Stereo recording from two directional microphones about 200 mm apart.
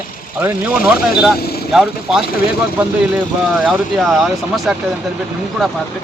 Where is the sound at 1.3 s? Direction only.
50° left (ahead or behind).